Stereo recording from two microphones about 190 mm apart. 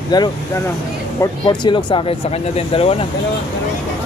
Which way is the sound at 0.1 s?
20° left (ahead or behind).